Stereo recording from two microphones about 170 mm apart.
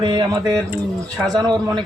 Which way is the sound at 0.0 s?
25° right (ahead or behind).